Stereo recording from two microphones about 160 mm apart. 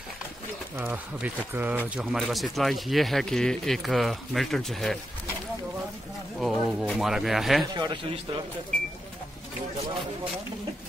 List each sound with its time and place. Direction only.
0.7 s speech: 10° right (ahead or behind)
2.0 s speech: centre (ahead or behind)
6.4 s speech: centre (ahead or behind)
7.6 s a man's voice: 30° right (ahead or behind)